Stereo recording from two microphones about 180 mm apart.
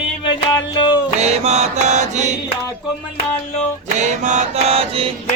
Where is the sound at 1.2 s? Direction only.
40° right (ahead or behind).